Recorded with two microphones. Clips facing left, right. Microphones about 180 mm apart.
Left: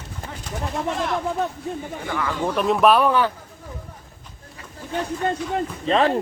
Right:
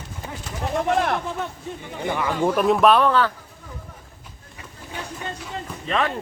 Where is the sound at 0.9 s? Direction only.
60° right (ahead or behind).